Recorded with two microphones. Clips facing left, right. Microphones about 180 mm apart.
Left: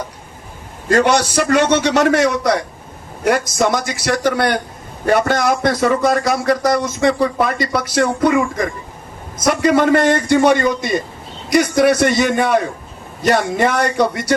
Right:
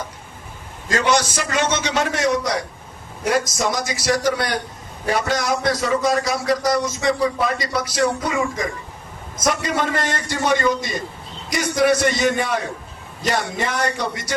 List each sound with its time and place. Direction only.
0.9 s a man's voice: 60° left (ahead or behind)